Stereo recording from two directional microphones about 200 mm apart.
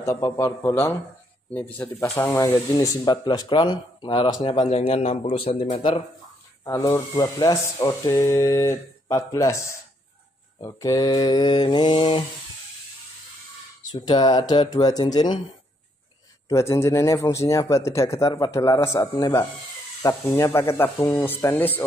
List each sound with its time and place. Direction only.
0.0 s speech: 15° left (ahead or behind)
13.9 s speech: 20° left (ahead or behind)
16.4 s speech: 15° left (ahead or behind)